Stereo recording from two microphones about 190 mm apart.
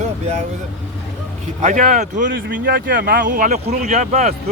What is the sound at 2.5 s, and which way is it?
Speech, 60° right (ahead or behind).